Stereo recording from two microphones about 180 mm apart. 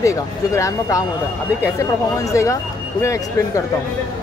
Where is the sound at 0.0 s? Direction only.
15° left (ahead or behind).